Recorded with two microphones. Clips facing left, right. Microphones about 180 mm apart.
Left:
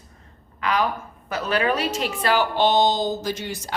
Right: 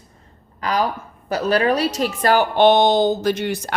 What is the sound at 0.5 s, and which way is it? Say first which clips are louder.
A woman's voice: right 2 dB; 35° right (ahead or behind).